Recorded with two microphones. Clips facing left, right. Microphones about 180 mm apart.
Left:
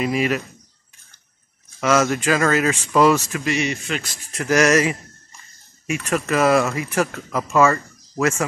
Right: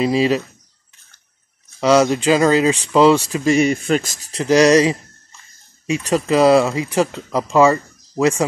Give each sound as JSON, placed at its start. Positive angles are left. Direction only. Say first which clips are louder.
{"t": 0.0, "sound": "speech", "louder": "right 5 dB", "side_deg": -30}
{"t": 1.8, "sound": "speech", "louder": "right 5 dB", "side_deg": -30}
{"t": 3.4, "sound": "speech", "louder": "right 10 dB", "side_deg": -45}
{"t": 5.9, "sound": "speech", "louder": "right 5 dB", "side_deg": -30}
{"t": 7.5, "sound": "speech", "louder": "right 3 dB", "side_deg": -15}
{"t": 8.2, "sound": "speech", "louder": "right 4 dB", "side_deg": -30}